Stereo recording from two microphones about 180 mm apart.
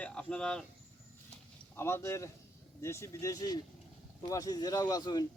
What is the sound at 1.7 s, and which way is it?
Speech, 15° left (ahead or behind).